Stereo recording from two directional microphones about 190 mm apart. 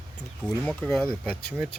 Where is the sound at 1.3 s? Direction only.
55° left (ahead or behind).